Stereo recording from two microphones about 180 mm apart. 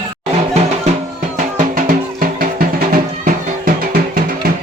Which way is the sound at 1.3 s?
45° right (ahead or behind).